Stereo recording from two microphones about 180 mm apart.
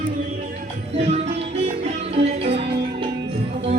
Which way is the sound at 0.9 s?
35° right (ahead or behind).